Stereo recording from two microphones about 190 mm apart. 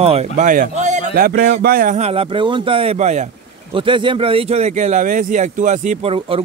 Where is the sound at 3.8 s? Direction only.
25° right (ahead or behind).